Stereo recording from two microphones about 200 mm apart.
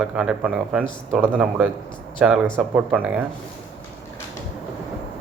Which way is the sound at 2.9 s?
5° right (ahead or behind).